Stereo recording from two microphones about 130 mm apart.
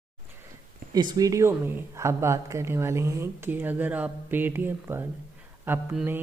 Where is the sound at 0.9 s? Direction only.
30° right (ahead or behind).